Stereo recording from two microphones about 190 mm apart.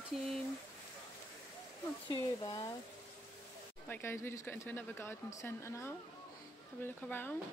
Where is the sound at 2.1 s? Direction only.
25° left (ahead or behind).